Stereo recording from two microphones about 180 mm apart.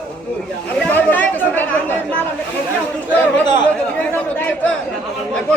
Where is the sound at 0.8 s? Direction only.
10° left (ahead or behind).